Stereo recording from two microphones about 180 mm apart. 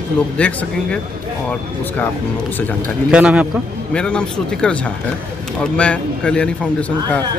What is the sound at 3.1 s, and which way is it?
Speech, 5° right (ahead or behind).